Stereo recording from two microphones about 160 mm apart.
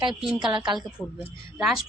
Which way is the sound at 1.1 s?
5° right (ahead or behind).